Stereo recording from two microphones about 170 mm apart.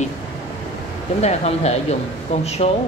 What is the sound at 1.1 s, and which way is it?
Speech, 40° left (ahead or behind).